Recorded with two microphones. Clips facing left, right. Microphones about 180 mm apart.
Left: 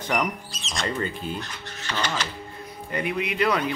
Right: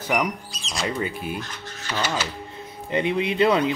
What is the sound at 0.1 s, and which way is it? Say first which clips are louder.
Speech: right 2 dB; 10° right (ahead or behind).